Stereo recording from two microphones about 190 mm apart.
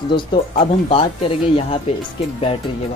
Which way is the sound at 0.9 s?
30° left (ahead or behind).